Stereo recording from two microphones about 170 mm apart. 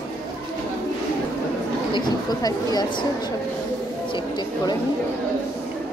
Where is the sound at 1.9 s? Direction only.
25° left (ahead or behind).